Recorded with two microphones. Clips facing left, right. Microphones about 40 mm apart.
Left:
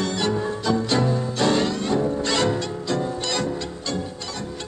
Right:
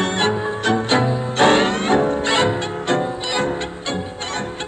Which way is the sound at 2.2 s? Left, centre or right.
Right.